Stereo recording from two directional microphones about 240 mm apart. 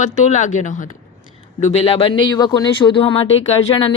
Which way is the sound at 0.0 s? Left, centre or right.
Left.